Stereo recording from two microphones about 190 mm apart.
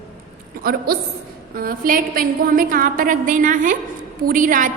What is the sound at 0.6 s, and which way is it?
A woman's voice, 55° right (ahead or behind).